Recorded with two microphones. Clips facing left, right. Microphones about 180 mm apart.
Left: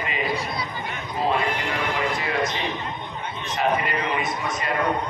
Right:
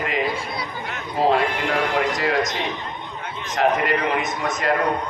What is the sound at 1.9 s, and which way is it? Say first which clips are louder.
A man's voice: right 4 dB; 75° right (ahead or behind).